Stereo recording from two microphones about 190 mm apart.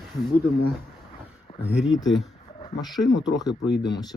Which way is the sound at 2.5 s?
20° left (ahead or behind).